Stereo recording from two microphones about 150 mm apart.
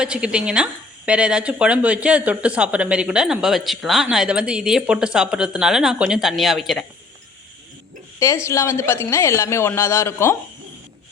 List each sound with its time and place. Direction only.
0.0 s a woman's voice: 5° right (ahead or behind)
8.4 s a man's voice: 20° left (ahead or behind)